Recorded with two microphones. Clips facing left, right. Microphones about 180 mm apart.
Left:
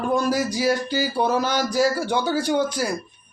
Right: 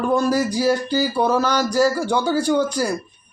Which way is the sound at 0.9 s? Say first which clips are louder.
Right 3 dB; 45° right (ahead or behind).